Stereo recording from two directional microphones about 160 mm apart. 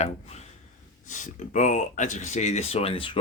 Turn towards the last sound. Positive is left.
turn(degrees=35)  # may be behind; listen again after turning